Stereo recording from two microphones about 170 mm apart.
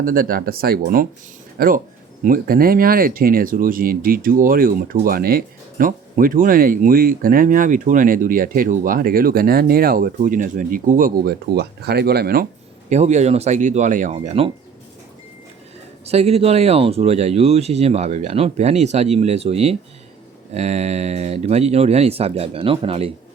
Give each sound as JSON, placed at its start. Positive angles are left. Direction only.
{"t": 0.0, "sound": "speech", "side_deg": -60}
{"t": 12.9, "sound": "speech", "side_deg": -45}
{"t": 16.0, "sound": "speech", "side_deg": -40}